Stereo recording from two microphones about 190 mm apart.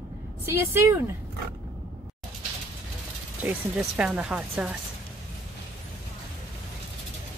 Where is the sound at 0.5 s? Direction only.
15° right (ahead or behind).